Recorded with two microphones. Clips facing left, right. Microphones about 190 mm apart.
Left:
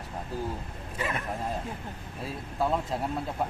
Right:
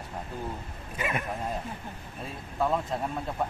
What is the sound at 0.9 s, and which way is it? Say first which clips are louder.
Dog: right 1 dB; 15° right (ahead or behind).